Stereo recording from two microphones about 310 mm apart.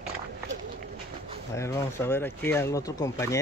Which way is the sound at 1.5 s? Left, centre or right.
Centre.